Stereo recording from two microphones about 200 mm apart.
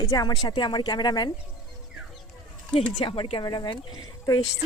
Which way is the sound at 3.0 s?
25° left (ahead or behind).